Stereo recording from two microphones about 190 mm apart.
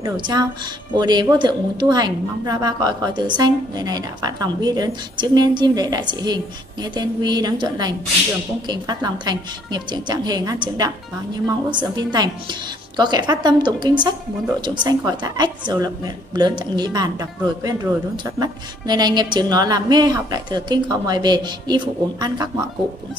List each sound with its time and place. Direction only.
0.0 s a woman's voice: 20° right (ahead or behind)